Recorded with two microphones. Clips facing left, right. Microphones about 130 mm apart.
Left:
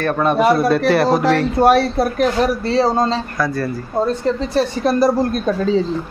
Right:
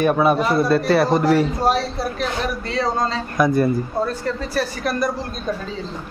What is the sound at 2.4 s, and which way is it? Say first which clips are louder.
Speech: left 7 dB; 35° left (ahead or behind).